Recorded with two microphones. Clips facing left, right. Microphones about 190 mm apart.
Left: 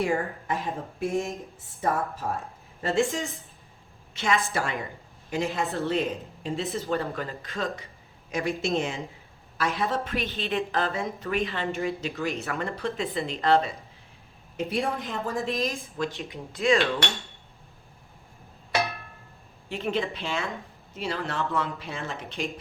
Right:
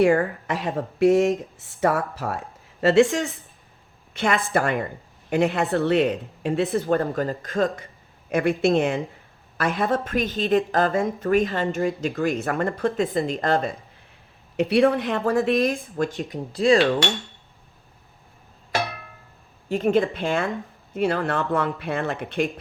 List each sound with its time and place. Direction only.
0.0 s a woman's voice: 85° right
4.1 s speech: 60° right (ahead or behind)
8.3 s a woman's voice: 60° right (ahead or behind)
14.5 s a woman's voice: 75° right (ahead or behind); by 16.1 s 55° right (ahead or behind)
16.3 s speech: 35° right (ahead or behind)
19.6 s a woman's voice: 45° right (ahead or behind)